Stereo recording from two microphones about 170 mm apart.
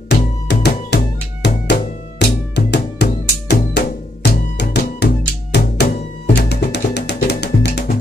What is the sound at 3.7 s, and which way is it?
Music, 70° left (ahead or behind).